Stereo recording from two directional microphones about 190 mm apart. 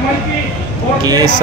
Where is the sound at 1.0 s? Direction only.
20° right (ahead or behind).